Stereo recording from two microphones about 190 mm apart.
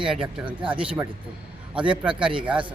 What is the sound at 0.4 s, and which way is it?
Speech, 25° right (ahead or behind).